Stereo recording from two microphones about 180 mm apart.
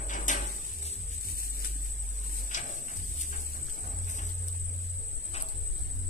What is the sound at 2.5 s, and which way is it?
Horse, 45° left (ahead or behind).